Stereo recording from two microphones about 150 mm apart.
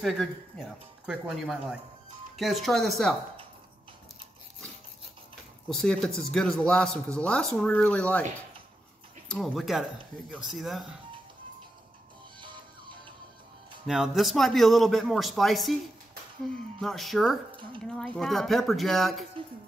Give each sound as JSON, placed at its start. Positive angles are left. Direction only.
{"t": 0.0, "sound": "a man's voice", "side_deg": 0}
{"t": 5.7, "sound": "a man's voice", "side_deg": 0}
{"t": 9.3, "sound": "a man's voice", "side_deg": 0}
{"t": 12.4, "sound": "music", "side_deg": -30}
{"t": 13.8, "sound": "a man's voice", "side_deg": -5}
{"t": 16.8, "sound": "a man's voice", "side_deg": 0}